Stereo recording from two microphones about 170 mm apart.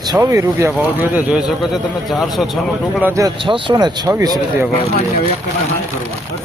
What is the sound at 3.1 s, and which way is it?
Speech, 20° right (ahead or behind).